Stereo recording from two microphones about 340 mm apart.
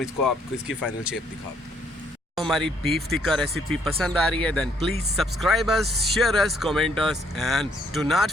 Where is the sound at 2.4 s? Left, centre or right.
Centre.